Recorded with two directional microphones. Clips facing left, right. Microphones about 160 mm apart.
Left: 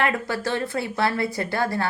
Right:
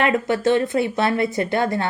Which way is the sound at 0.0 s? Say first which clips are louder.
Right 6 dB; 20° right (ahead or behind).